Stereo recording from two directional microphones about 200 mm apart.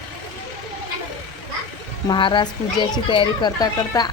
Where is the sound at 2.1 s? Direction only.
25° left (ahead or behind).